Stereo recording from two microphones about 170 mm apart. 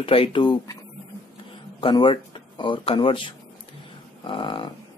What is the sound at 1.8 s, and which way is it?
Speech, 30° left (ahead or behind).